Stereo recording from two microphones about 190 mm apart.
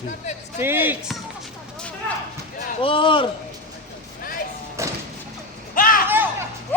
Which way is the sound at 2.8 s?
25° left (ahead or behind).